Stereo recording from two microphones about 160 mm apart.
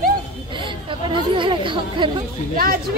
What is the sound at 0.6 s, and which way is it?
Speech, 30° right (ahead or behind).